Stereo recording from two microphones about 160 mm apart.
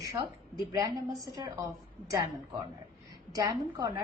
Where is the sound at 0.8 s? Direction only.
25° right (ahead or behind).